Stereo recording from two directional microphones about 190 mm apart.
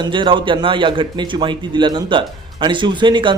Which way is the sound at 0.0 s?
25° right (ahead or behind).